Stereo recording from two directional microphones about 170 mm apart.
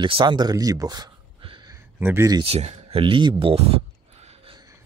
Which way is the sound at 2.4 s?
40° right (ahead or behind).